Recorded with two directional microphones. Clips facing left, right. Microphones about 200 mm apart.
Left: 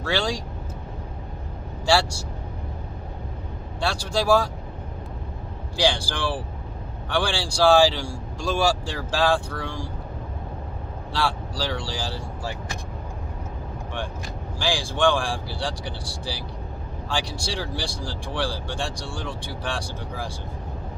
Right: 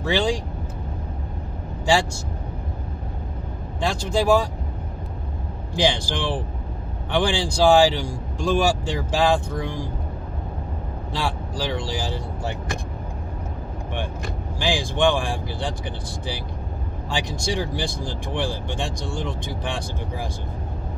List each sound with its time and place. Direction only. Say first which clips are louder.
0.0 s speech: right 4 dB; 15° right (ahead or behind)
1.9 s speech: right 1 dB; 15° right (ahead or behind)
3.8 s speech: right 3 dB; 15° right (ahead or behind)
5.8 s speech: right 2 dB; 20° right (ahead or behind)
11.1 s speech: left 1 dB; 15° right (ahead or behind)
14.6 s speech: right 2 dB; 20° right (ahead or behind)
17.1 s speech: right 3 dB; 20° right (ahead or behind)